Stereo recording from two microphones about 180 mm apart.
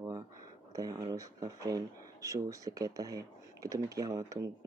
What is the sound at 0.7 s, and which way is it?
Speech, 20° right (ahead or behind).